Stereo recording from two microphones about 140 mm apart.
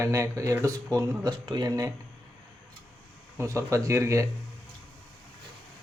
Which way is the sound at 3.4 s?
20° right (ahead or behind).